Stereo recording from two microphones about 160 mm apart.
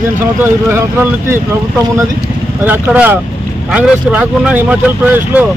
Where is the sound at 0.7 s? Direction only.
15° right (ahead or behind).